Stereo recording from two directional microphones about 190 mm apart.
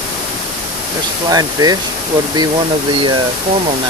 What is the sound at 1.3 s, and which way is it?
Speech, 20° right (ahead or behind).